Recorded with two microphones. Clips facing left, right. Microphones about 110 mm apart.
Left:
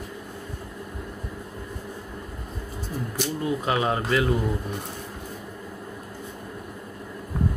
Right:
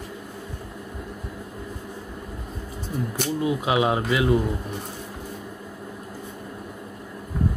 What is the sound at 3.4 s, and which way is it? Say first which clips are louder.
Speech: right 3 dB; 10° right (ahead or behind).